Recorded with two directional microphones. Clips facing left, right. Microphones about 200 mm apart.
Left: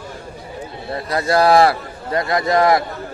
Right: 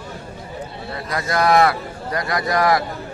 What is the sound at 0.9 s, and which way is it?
A man's voice, 30° left (ahead or behind).